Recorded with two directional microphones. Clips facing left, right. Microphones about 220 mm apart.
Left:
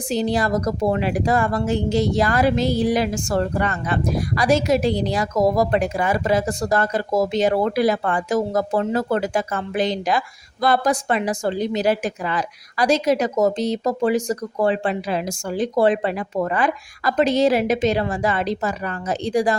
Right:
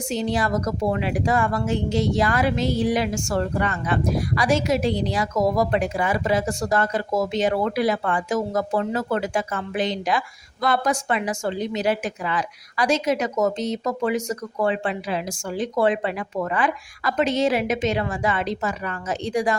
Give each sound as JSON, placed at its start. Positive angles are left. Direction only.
{"t": 0.1, "sound": "speech", "side_deg": 35}